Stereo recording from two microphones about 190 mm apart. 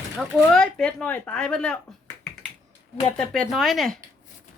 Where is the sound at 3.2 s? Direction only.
Centre (ahead or behind).